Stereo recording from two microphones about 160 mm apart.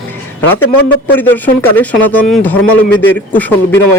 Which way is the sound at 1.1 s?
10° left (ahead or behind).